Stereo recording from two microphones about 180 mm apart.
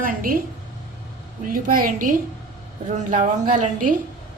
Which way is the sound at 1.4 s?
50° right (ahead or behind).